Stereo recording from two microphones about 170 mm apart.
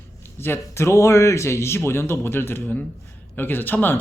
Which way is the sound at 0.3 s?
15° left (ahead or behind).